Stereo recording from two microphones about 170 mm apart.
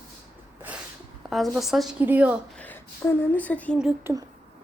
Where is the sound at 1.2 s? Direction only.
Centre (ahead or behind).